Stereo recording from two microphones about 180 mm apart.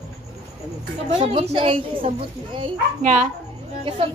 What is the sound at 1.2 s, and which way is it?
Speech, 30° right (ahead or behind).